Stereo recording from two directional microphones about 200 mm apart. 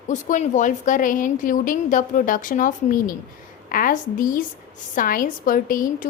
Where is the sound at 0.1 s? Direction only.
40° left (ahead or behind).